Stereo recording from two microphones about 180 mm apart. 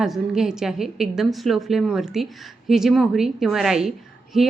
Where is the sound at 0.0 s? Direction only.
5° right (ahead or behind).